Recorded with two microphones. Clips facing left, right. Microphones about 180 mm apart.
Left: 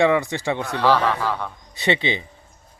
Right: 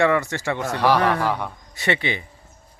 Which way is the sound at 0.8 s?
15° right (ahead or behind).